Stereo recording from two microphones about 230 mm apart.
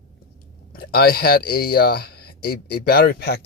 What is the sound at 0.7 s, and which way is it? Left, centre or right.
Speech, left.